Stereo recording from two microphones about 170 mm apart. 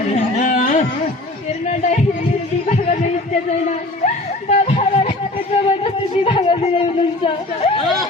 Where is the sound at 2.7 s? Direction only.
40° left (ahead or behind).